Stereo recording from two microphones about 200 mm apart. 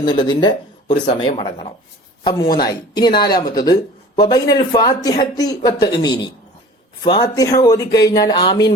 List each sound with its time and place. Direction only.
0.0 s speech: 20° left (ahead or behind)